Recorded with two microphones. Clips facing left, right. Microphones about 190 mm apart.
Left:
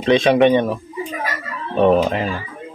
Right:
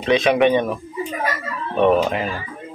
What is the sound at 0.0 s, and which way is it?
Speech, 30° left (ahead or behind).